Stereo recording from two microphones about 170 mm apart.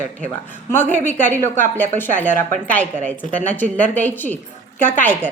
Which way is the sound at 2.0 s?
10° left (ahead or behind).